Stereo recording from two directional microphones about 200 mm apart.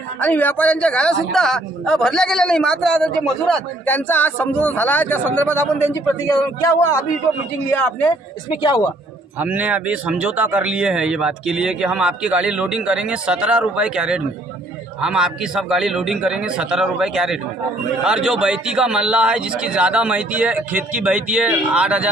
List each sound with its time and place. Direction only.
0.2 s speech: 10° left (ahead or behind)
8.6 s speech: 20° left (ahead or behind)
9.4 s speech: 5° right (ahead or behind)